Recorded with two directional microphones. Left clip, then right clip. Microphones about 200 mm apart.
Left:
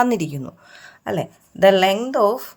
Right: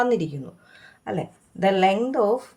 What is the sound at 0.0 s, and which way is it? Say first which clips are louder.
Speech: left 3 dB; 45° left (ahead or behind).